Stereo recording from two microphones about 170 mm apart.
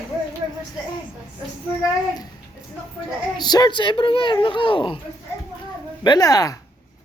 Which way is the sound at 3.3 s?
25° left (ahead or behind).